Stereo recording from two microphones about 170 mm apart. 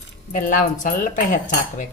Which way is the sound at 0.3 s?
50° left (ahead or behind).